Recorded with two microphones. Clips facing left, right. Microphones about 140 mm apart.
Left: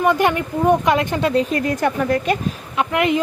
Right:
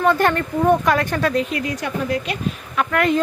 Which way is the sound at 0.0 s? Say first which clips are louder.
Even; 15° left (ahead or behind).